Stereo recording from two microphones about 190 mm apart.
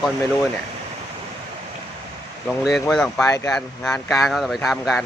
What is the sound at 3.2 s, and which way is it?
Speech, 15° left (ahead or behind).